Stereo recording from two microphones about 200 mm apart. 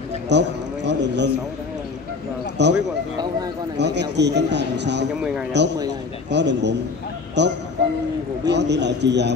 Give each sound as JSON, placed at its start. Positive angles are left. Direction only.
{"t": 0.3, "sound": "speech", "side_deg": -60}
{"t": 2.6, "sound": "speech", "side_deg": -60}